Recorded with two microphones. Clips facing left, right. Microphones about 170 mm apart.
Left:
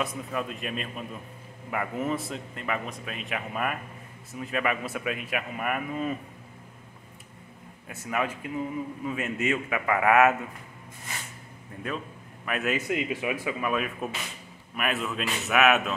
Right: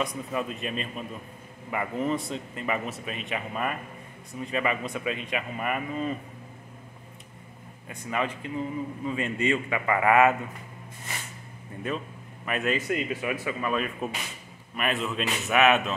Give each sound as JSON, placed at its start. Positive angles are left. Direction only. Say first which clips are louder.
{"t": 0.0, "sound": "a man's voice", "louder": "right 1 dB", "side_deg": 0}
{"t": 7.9, "sound": "a man's voice", "louder": "even", "side_deg": 5}
{"t": 12.4, "sound": "a man's voice", "louder": "right 1 dB", "side_deg": 5}